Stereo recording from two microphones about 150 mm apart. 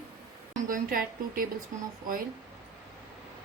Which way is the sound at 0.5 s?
70° right (ahead or behind).